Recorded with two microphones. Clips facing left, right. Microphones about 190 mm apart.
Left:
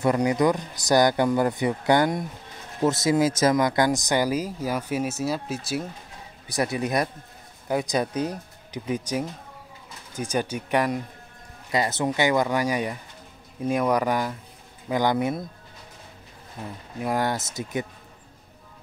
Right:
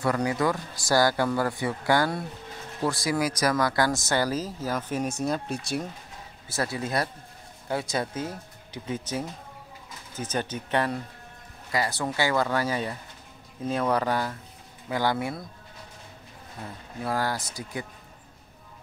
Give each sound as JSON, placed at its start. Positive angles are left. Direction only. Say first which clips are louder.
{"t": 0.0, "sound": "speech", "louder": "left 4 dB", "side_deg": 20}
{"t": 6.5, "sound": "speech", "louder": "left 4 dB", "side_deg": 15}
{"t": 16.6, "sound": "speech", "louder": "left 3 dB", "side_deg": 15}